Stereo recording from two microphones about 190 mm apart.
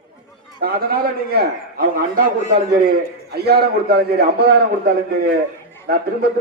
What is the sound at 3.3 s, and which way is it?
A man's voice, 55° right (ahead or behind).